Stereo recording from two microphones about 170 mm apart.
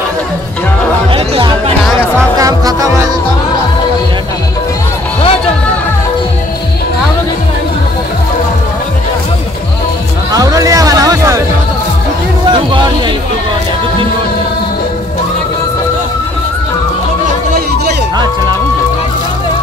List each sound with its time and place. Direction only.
1.1 s music: 30° right (ahead or behind)
2.3 s music: 20° right (ahead or behind)
10.3 s music: 20° right (ahead or behind)